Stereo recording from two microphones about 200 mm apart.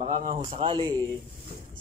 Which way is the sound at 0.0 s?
35° right (ahead or behind).